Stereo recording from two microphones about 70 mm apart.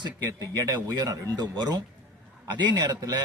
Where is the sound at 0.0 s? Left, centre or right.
Right.